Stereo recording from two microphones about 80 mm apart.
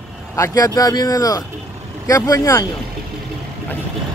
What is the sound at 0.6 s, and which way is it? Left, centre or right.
Speech, left.